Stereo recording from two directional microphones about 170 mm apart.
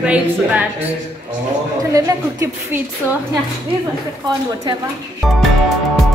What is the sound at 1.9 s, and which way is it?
Speech, 20° right (ahead or behind).